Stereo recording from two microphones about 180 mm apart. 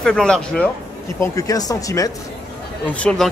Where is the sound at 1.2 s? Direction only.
20° left (ahead or behind).